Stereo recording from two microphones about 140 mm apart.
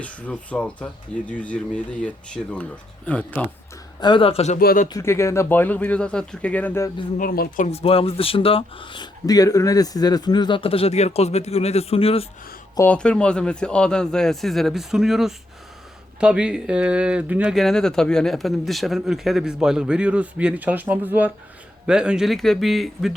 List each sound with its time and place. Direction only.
0.0 s speech: 10° left (ahead or behind)
4.0 s speech: 40° left (ahead or behind)
4.5 s speech: 80° left
4.9 s speech: 20° left (ahead or behind)
7.2 s speech: 85° left
7.7 s speech: 45° left (ahead or behind)
12.9 s speech: 5° left (ahead or behind)